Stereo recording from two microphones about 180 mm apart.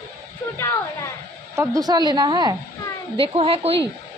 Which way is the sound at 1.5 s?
15° right (ahead or behind).